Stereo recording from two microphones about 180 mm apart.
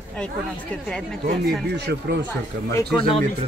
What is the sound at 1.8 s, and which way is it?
Speech, 65° right (ahead or behind).